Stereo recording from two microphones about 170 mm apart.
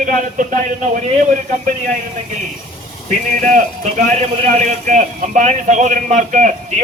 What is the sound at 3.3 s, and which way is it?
A man's voice, 50° right (ahead or behind).